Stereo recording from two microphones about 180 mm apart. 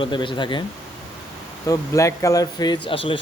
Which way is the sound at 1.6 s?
20° left (ahead or behind).